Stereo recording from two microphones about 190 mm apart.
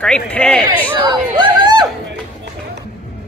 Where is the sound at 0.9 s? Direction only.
25° right (ahead or behind).